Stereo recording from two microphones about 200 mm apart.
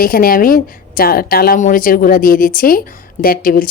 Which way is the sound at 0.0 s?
45° left (ahead or behind).